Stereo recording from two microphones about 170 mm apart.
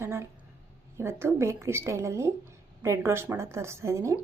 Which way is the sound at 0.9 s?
15° right (ahead or behind).